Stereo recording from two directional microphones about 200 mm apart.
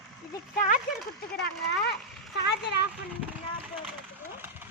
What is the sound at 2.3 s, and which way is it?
Speech, 55° left (ahead or behind).